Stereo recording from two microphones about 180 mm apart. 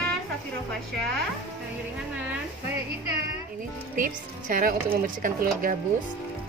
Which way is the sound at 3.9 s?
50° right (ahead or behind).